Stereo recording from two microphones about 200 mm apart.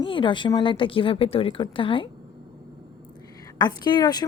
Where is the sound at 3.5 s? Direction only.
20° left (ahead or behind).